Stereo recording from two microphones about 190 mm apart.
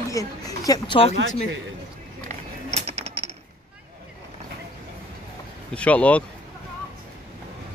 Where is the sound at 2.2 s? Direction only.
35° right (ahead or behind).